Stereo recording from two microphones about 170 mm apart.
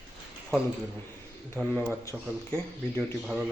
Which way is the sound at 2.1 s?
5° right (ahead or behind).